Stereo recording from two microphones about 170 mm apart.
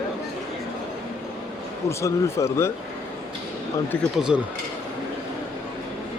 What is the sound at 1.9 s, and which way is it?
Speech, 15° left (ahead or behind).